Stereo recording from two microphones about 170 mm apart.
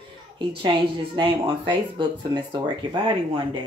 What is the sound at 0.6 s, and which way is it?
Speech, 30° right (ahead or behind).